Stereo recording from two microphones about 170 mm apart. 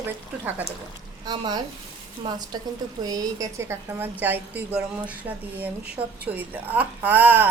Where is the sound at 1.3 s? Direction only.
25° right (ahead or behind).